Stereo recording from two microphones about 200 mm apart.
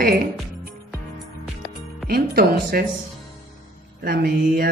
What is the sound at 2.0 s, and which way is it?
Speech, 50° right (ahead or behind).